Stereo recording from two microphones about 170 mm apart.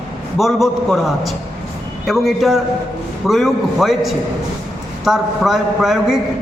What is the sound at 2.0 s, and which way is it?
A man's voice, centre (ahead or behind).